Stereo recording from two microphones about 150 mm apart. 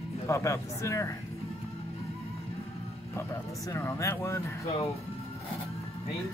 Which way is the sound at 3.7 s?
20° left (ahead or behind).